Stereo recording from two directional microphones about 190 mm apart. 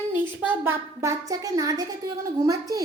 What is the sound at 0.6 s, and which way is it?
A woman's voice, 15° right (ahead or behind).